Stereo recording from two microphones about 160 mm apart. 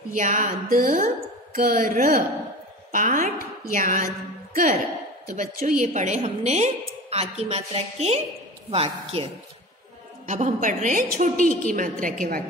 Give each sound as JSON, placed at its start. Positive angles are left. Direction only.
{"t": 0.1, "sound": "a woman's voice", "side_deg": -55}
{"t": 5.3, "sound": "a woman's voice", "side_deg": -50}
{"t": 10.2, "sound": "a woman's voice", "side_deg": -50}